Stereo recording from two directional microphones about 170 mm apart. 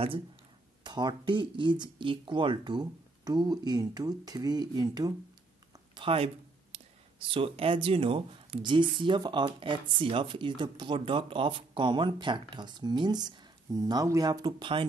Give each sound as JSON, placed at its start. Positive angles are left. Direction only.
{"t": 0.8, "sound": "speech", "side_deg": -25}
{"t": 5.9, "sound": "speech", "side_deg": -35}